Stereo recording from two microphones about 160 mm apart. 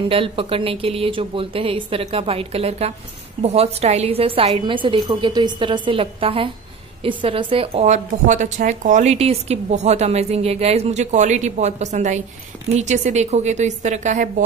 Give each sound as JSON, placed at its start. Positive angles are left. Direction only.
{"t": 0.1, "sound": "a woman's voice", "side_deg": -35}